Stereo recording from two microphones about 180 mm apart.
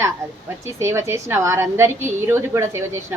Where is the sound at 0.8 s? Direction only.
15° right (ahead or behind).